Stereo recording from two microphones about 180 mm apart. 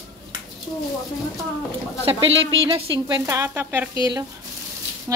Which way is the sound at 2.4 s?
25° right (ahead or behind).